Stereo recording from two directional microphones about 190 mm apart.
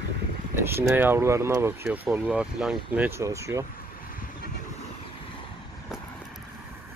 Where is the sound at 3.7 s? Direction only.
50° left (ahead or behind).